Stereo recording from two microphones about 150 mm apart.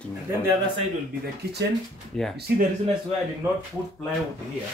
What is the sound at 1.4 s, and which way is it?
Speech, 90° right.